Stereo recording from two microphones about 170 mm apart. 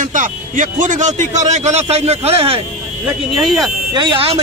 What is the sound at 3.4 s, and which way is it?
Speech, centre (ahead or behind).